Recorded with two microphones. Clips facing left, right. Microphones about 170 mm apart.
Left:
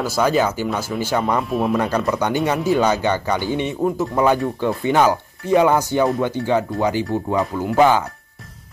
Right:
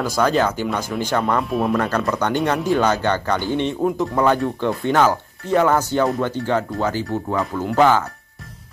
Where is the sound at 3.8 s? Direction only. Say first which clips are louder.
Even; centre (ahead or behind).